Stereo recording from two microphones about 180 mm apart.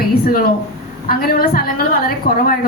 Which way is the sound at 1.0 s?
55° left (ahead or behind).